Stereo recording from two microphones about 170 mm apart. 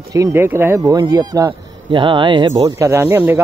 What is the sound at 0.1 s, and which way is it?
Speech, 15° right (ahead or behind).